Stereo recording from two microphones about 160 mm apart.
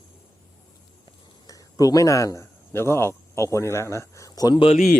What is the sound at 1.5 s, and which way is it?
Speech, 20° left (ahead or behind).